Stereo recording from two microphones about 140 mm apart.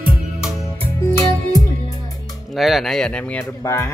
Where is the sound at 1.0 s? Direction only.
25° left (ahead or behind).